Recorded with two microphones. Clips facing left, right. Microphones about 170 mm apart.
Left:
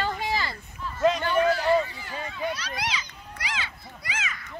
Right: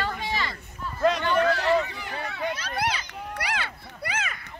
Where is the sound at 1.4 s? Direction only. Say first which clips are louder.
Left 2 dB; 70° right (ahead or behind).